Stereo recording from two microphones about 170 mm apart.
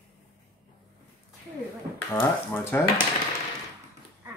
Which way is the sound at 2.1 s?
10° left (ahead or behind).